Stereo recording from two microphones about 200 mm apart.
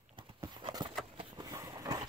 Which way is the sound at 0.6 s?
25° right (ahead or behind).